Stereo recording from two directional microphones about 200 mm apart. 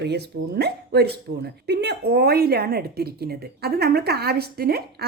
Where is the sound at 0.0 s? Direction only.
55° right (ahead or behind).